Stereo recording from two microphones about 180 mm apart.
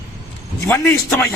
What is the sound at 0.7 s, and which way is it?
Speech, 15° left (ahead or behind).